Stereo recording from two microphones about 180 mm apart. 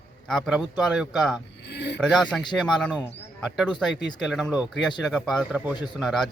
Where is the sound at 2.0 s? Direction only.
5° left (ahead or behind).